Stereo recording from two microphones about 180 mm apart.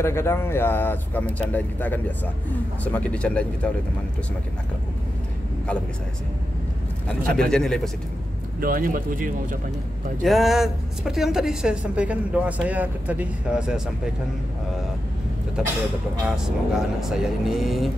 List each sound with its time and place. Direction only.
0.0 s speech: 15° left (ahead or behind)
7.3 s a woman's voice: 5° left (ahead or behind)
8.5 s speech: 50° right (ahead or behind)
10.2 s a woman's voice: centre (ahead or behind)
15.6 s a woman's voice: 5° right (ahead or behind)